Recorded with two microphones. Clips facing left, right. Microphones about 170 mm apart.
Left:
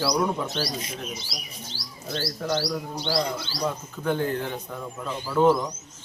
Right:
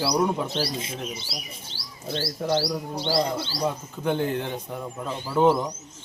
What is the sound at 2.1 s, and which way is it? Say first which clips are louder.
Speech: right 2 dB; 30° right (ahead or behind).